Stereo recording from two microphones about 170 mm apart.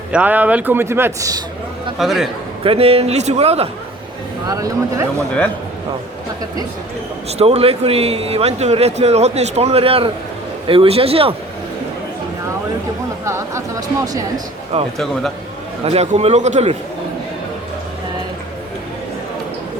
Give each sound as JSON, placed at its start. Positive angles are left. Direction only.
{"t": 0.1, "sound": "a man's voice", "side_deg": -10}
{"t": 2.0, "sound": "a man's voice", "side_deg": 0}
{"t": 2.6, "sound": "speech", "side_deg": -35}
{"t": 4.4, "sound": "speech", "side_deg": -20}
{"t": 7.3, "sound": "speech", "side_deg": -40}
{"t": 13.2, "sound": "speech", "side_deg": -15}
{"t": 14.9, "sound": "a man's voice", "side_deg": 0}
{"t": 15.8, "sound": "speech", "side_deg": -40}